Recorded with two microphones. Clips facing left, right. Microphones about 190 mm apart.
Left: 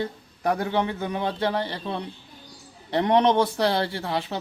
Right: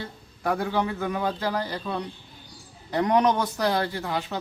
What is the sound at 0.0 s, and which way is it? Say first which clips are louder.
A man's voice: left 4 dB; 20° left (ahead or behind).